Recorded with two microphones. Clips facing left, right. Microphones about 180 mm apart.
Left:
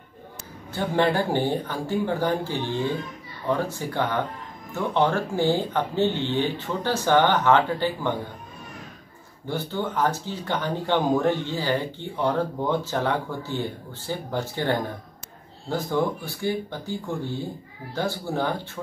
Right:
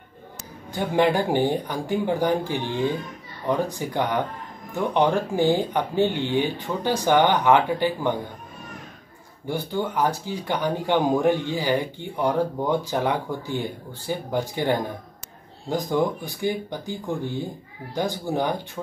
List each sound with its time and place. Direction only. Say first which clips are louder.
0.7 s speech: right 2 dB; 15° right (ahead or behind)
9.5 s speech: right 2 dB; 10° right (ahead or behind)